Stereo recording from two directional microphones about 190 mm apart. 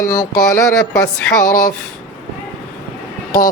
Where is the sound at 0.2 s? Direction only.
15° left (ahead or behind).